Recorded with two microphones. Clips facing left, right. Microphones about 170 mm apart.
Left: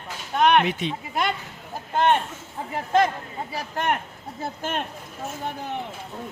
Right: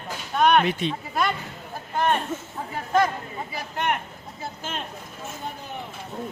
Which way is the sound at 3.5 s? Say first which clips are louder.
Left 2 dB; 40° left (ahead or behind).